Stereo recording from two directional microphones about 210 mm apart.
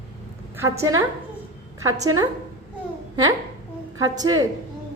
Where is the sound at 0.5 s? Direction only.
15° right (ahead or behind).